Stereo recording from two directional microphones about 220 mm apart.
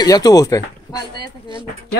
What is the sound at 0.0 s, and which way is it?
Speech, 15° left (ahead or behind).